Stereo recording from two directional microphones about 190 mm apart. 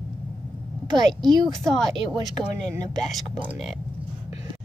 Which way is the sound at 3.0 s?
Centre (ahead or behind).